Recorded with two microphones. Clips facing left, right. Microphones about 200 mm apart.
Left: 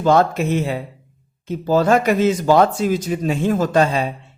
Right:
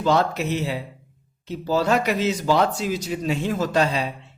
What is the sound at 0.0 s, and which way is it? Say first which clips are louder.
Speech: left 5 dB; 50° left (ahead or behind).